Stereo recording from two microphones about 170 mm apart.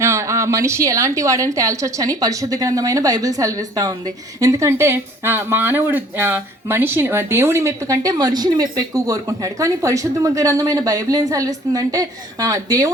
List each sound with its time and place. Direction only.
0.0 s a woman's voice: 15° right (ahead or behind)